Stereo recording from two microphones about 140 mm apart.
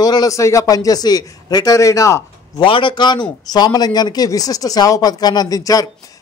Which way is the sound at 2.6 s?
35° left (ahead or behind).